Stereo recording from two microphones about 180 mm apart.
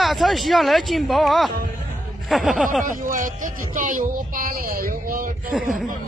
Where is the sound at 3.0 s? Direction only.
50° right (ahead or behind).